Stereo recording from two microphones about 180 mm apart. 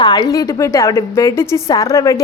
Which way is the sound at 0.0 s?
20° left (ahead or behind).